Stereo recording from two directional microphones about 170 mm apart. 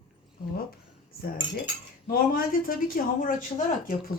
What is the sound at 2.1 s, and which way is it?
Speech, 55° left (ahead or behind).